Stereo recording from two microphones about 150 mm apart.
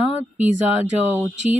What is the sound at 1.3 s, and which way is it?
Speech, 50° right (ahead or behind).